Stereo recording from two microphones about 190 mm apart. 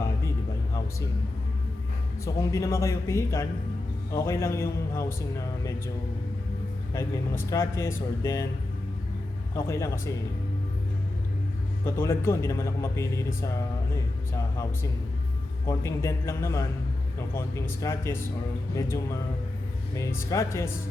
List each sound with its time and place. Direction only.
2.2 s speech: 15° left (ahead or behind)
6.9 s speech: 15° left (ahead or behind)
9.6 s speech: 15° left (ahead or behind)
11.9 s speech: 15° left (ahead or behind)
15.6 s speech: 15° left (ahead or behind)
20.0 s speech: 15° left (ahead or behind)